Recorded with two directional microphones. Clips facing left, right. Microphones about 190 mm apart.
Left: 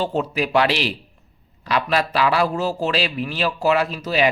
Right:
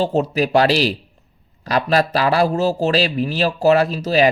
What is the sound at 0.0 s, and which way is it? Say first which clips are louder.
A man's voice: right 4 dB; 40° right (ahead or behind).